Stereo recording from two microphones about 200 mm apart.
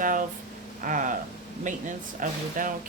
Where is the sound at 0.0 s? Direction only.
40° right (ahead or behind).